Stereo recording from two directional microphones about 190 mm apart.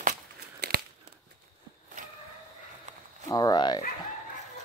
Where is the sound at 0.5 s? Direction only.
55° right (ahead or behind).